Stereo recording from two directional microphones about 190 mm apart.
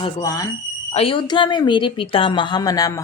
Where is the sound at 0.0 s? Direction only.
20° left (ahead or behind).